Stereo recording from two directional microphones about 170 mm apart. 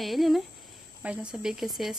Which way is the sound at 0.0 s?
Centre (ahead or behind).